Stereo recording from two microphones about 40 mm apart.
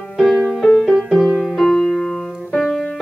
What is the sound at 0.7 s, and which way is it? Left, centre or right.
Music, centre.